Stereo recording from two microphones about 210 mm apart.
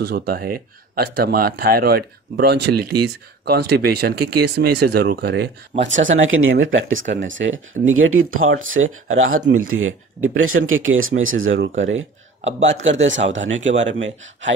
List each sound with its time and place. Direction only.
0.0 s speech: 50° right (ahead or behind); by 14.5 s 65° right (ahead or behind)